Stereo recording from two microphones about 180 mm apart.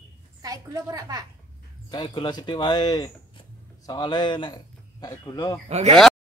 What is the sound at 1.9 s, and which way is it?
Speech, 25° left (ahead or behind).